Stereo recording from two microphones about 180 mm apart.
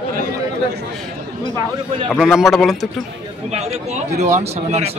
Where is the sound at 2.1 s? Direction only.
Centre (ahead or behind).